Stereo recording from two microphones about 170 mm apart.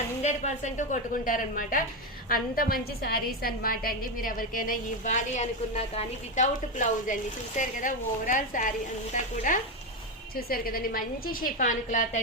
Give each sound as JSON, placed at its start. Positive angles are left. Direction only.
{"t": 0.2, "sound": "a woman's voice", "side_deg": 40}
{"t": 10.3, "sound": "a woman's voice", "side_deg": 60}